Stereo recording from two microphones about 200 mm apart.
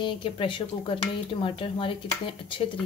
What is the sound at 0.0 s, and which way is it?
Stir, 25° left (ahead or behind).